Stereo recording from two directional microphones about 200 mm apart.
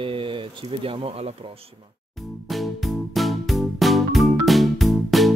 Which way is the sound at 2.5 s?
Centre (ahead or behind).